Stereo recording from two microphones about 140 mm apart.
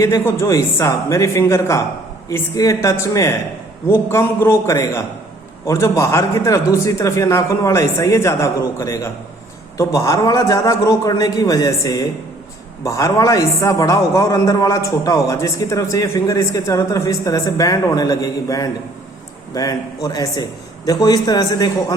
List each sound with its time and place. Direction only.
0.0 s a man's voice: 20° left (ahead or behind)